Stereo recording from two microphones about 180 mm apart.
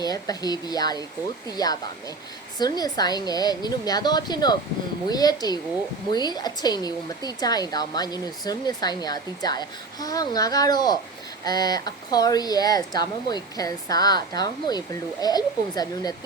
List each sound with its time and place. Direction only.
0.0 s speech: 20° left (ahead or behind)